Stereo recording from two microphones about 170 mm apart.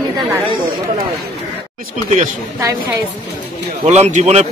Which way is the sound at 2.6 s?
20° right (ahead or behind).